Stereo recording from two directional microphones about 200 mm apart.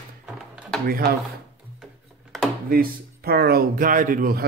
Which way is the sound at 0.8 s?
45° right (ahead or behind).